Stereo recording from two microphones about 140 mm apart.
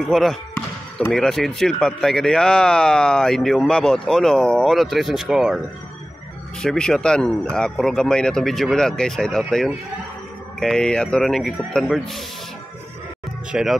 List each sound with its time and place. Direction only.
0.0 s speech: centre (ahead or behind)
6.6 s speech: 5° left (ahead or behind)
10.6 s speech: 5° left (ahead or behind)
13.5 s speech: 5° right (ahead or behind)